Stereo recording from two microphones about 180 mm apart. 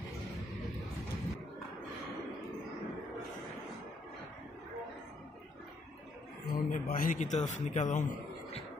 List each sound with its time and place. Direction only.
6.4 s a man's voice: 50° left (ahead or behind)